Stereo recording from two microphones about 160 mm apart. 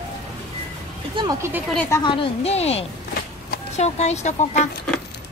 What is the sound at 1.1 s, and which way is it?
Speech, 25° right (ahead or behind).